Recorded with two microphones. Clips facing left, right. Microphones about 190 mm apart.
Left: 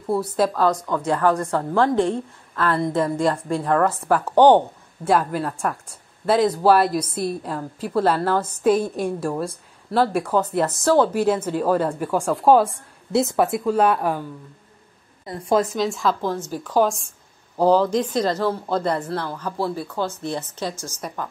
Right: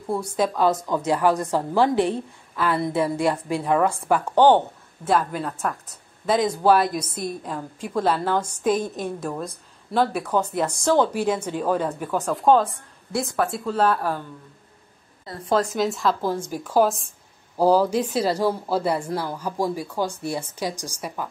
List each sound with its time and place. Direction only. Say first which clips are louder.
0.0 s a woman's voice: left 3 dB; 5° left (ahead or behind)
0.7 s a woman's voice: even; 10° right (ahead or behind)
4.4 s a woman's voice: left 3 dB; 15° left (ahead or behind)
13.1 s a woman's voice: left 5 dB; 25° left (ahead or behind)
15.2 s a woman's voice: left 2 dB; 10° left (ahead or behind)
15.7 s a woman's voice: even; centre (ahead or behind)